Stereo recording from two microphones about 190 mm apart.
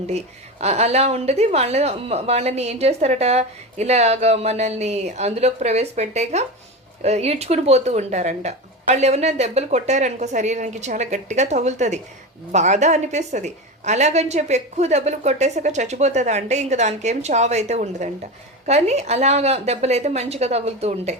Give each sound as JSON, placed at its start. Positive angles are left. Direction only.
{"t": 0.6, "sound": "speech", "side_deg": -35}